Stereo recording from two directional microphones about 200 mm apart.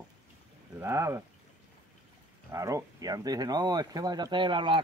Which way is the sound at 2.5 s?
15° right (ahead or behind).